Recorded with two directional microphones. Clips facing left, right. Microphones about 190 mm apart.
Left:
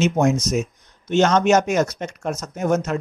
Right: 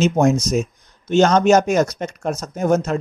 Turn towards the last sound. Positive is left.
turn(degrees=-35)  # may be behind; listen again after turning